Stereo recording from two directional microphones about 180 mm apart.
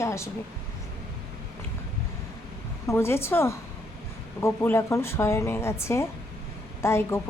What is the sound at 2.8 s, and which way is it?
A woman's voice, 15° left (ahead or behind).